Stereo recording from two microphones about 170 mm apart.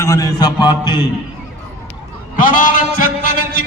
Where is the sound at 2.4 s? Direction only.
50° left (ahead or behind).